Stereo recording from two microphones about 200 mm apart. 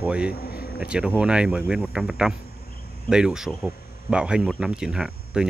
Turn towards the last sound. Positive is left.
turn(degrees=-5)  # may be behind; listen again after turning